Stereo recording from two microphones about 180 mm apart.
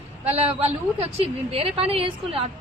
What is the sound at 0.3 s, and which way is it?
A woman's voice, 35° right (ahead or behind).